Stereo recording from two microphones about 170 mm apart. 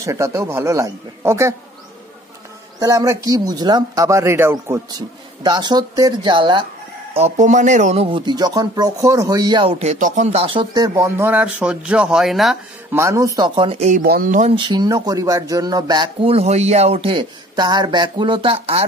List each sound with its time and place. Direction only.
0.0 s speech: 15° right (ahead or behind)
2.8 s speech: 20° right (ahead or behind)
5.4 s speech: 25° right (ahead or behind)
7.2 s speech: 40° right (ahead or behind); by 12.5 s centre (ahead or behind)
12.9 s speech: 15° right (ahead or behind)
13.4 s speech: 30° right (ahead or behind)
14.0 s speech: 60° right (ahead or behind)
14.5 s speech: 25° right (ahead or behind)